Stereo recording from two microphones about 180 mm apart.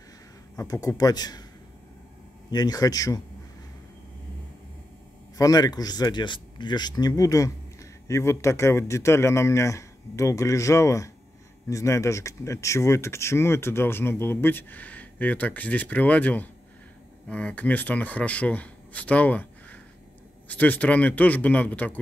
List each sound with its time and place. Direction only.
0.6 s speech: 20° left (ahead or behind)
2.5 s speech: 20° left (ahead or behind)
5.4 s speech: 20° left (ahead or behind)